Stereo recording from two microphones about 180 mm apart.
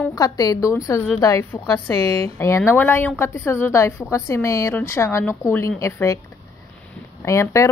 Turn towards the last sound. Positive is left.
turn(degrees=15)  # may be behind; listen again after turning